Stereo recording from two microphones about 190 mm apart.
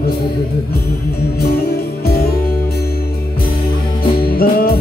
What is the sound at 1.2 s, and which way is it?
Music, 55° left (ahead or behind).